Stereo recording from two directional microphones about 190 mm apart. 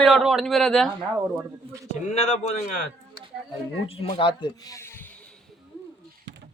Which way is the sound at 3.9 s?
30° left (ahead or behind).